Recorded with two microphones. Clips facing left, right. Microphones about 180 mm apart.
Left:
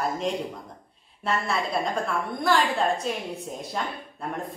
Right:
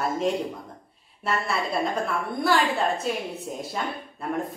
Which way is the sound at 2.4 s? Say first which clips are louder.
Even; 5° right (ahead or behind).